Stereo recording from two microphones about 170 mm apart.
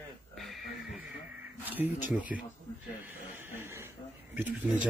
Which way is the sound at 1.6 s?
10° right (ahead or behind).